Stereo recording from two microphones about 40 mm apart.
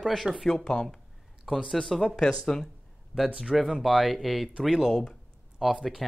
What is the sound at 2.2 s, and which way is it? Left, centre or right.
Speech, centre.